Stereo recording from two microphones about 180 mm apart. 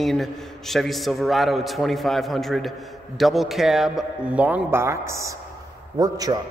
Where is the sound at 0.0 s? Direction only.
Centre (ahead or behind).